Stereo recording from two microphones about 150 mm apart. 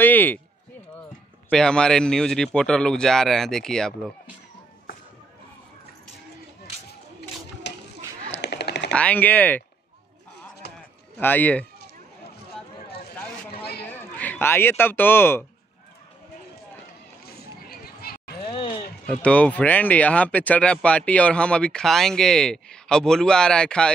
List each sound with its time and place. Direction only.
0.0 s run: 10° left (ahead or behind)
1.5 s speech: 5° left (ahead or behind)
8.9 s speech: 10° left (ahead or behind)
10.6 s clip-clop: 90° left
11.1 s speech: 10° left (ahead or behind)
14.1 s speech: 10° left (ahead or behind)
17.3 s a sound: 90° left
18.5 s a sound: 35° left (ahead or behind)
19.0 s speech: 10° left (ahead or behind)